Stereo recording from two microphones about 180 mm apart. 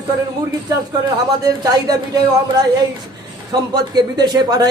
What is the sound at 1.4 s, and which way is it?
A man's voice, 20° right (ahead or behind).